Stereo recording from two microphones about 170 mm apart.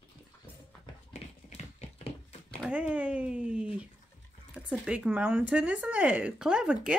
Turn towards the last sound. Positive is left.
turn(degrees=-5)  # may be behind; listen again after turning